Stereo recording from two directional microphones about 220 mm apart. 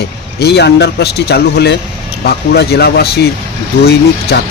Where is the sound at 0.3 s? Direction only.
50° left (ahead or behind).